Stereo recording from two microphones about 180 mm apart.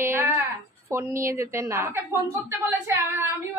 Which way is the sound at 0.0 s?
15° right (ahead or behind).